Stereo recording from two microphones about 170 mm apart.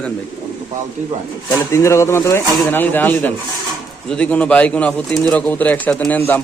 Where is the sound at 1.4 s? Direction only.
15° left (ahead or behind).